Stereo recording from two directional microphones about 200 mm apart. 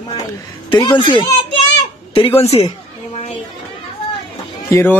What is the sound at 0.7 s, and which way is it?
A woman's voice, 25° left (ahead or behind).